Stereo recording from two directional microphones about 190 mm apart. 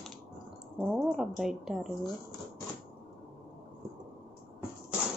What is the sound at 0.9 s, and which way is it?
A woman's voice, centre (ahead or behind).